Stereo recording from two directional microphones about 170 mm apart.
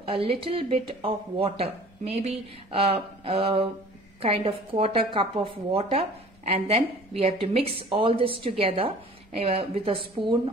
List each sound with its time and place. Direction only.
0.1 s a woman's voice: 35° right (ahead or behind)